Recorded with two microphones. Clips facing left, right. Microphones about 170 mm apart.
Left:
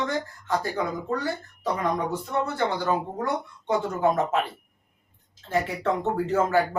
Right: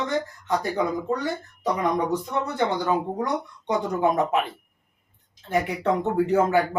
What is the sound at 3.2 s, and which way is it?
Speech, 15° right (ahead or behind).